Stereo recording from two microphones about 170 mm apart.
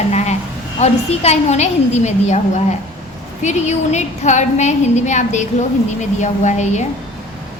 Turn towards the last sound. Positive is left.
turn(degrees=40)  # may be behind; listen again after turning